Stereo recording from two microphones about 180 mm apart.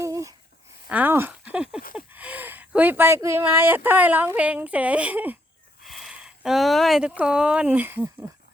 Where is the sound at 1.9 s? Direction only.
10° right (ahead or behind).